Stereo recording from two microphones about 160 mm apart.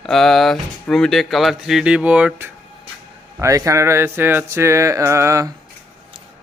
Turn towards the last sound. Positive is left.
turn(degrees=-20)  # may be behind; listen again after turning